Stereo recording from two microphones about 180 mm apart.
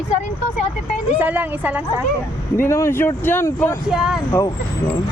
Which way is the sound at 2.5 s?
15° left (ahead or behind).